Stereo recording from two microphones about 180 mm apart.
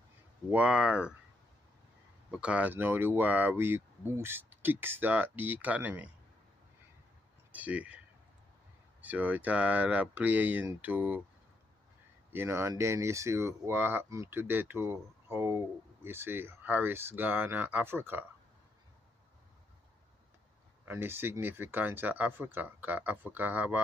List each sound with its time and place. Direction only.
0.5 s speech: 5° right (ahead or behind)
2.3 s speech: 5° right (ahead or behind)
7.5 s speech: 10° right (ahead or behind)
9.0 s speech: 10° right (ahead or behind)
12.3 s speech: 15° right (ahead or behind)
20.8 s speech: 10° right (ahead or behind)